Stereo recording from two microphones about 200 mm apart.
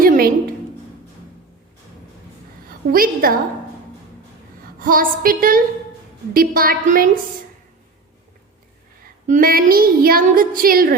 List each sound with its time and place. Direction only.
0.0 s a sound: 45° right (ahead or behind)
2.6 s a woman's voice: 45° right (ahead or behind)
4.8 s speech: 45° right (ahead or behind)
9.2 s speech: 45° right (ahead or behind)